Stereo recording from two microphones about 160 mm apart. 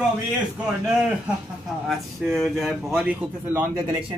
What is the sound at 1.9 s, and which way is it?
A man's voice, centre (ahead or behind).